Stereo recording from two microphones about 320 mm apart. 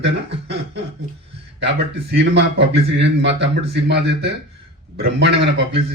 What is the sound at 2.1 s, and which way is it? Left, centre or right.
A man's voice, right.